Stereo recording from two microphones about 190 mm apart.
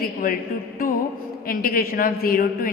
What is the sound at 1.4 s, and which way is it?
A woman's voice, 50° left (ahead or behind).